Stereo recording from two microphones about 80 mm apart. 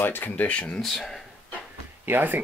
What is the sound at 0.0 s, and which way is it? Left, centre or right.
Speech, left.